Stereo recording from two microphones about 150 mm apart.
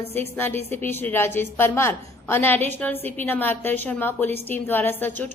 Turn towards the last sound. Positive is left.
turn(degrees=15)  # may be behind; listen again after turning